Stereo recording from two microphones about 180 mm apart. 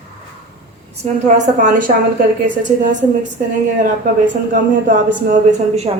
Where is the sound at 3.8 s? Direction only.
45° right (ahead or behind).